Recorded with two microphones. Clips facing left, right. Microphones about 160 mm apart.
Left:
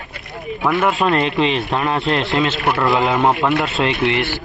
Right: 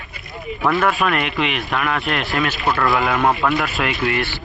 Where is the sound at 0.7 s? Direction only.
20° left (ahead or behind).